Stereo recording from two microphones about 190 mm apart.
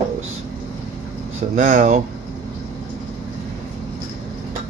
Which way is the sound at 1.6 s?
45° right (ahead or behind).